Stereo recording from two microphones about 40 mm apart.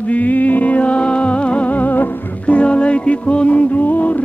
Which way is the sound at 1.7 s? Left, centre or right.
Left.